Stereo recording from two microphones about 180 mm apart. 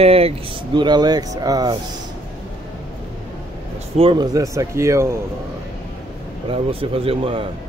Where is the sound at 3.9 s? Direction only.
25° right (ahead or behind).